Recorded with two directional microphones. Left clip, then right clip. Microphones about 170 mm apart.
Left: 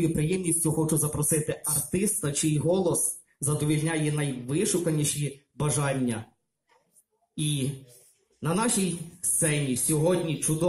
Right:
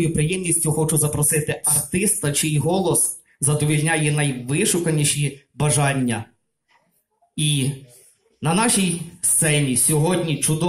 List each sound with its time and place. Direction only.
0.0 s speech: 25° right (ahead or behind)
7.3 s speech: 30° right (ahead or behind)